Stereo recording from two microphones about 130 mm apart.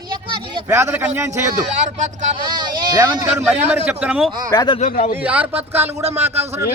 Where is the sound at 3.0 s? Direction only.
15° right (ahead or behind).